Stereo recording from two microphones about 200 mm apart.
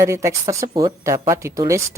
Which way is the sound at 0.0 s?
15° right (ahead or behind).